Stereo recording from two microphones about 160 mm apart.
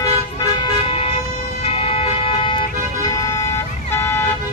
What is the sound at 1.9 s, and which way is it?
Vehicle, 35° left (ahead or behind).